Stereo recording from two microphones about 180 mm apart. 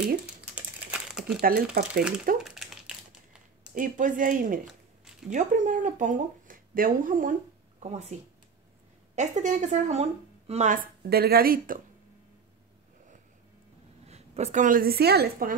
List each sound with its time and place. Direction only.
0.6 s crumpling: 5° right (ahead or behind)
2.0 s speech: 5° right (ahead or behind)
2.4 s crumpling: centre (ahead or behind)
3.7 s a woman's voice: 45° right (ahead or behind)
7.8 s speech: 35° right (ahead or behind)
9.1 s a woman's voice: 40° right (ahead or behind)
14.0 s a woman's voice: 35° right (ahead or behind); by 15.5 s 60° right (ahead or behind)